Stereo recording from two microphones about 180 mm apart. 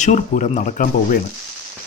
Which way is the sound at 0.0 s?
40° left (ahead or behind).